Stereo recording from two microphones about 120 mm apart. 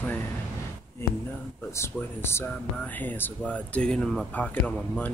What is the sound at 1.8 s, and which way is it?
Speech, 20° left (ahead or behind).